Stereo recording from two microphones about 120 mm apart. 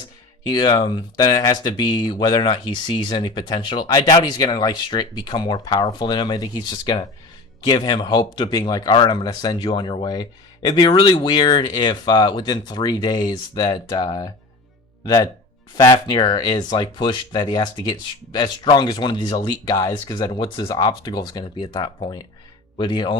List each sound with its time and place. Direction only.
0.4 s speech: 40° left (ahead or behind)